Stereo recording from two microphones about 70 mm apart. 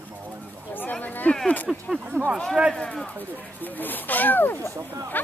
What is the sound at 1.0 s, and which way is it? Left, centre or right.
Speech, left.